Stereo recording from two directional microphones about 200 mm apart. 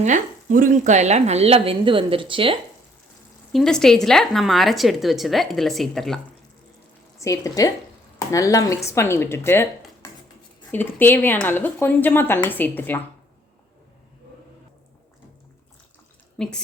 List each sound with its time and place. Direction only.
0.0 s speech: 40° right (ahead or behind)
3.5 s speech: centre (ahead or behind)
7.2 s speech: 15° left (ahead or behind)
16.4 s speech: 5° left (ahead or behind)